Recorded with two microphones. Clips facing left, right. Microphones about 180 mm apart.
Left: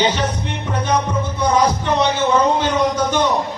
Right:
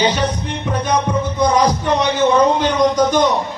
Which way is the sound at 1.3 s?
15° right (ahead or behind).